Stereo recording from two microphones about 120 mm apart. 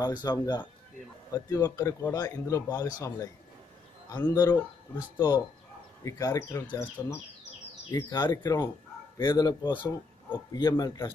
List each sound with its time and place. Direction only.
0.0 s speech: 35° left (ahead or behind)
4.3 s speech: 30° left (ahead or behind)
10.7 s speech: 25° left (ahead or behind)